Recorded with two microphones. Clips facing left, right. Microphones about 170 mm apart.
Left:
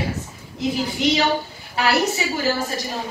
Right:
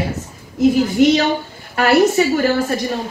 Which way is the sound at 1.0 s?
50° right (ahead or behind).